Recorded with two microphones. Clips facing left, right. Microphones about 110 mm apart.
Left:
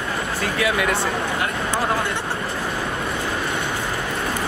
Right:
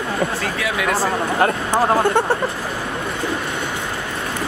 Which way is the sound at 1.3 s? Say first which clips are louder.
Right 6 dB; 40° right (ahead or behind).